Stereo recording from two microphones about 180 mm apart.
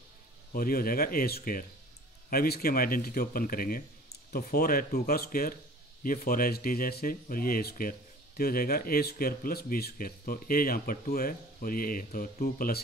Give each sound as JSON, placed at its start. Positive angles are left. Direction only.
{"t": 0.5, "sound": "speech", "side_deg": 55}